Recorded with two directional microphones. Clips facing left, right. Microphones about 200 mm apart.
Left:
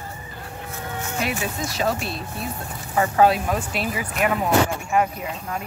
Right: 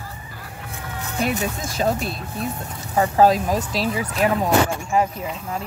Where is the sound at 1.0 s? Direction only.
40° right (ahead or behind).